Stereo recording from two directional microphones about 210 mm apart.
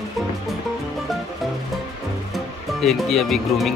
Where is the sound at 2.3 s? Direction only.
Centre (ahead or behind).